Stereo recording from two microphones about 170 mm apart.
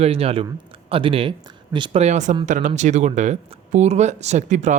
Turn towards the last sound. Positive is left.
turn(degrees=-45)  # may be behind; listen again after turning